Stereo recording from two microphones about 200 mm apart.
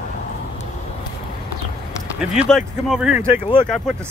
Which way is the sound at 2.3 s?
5° right (ahead or behind).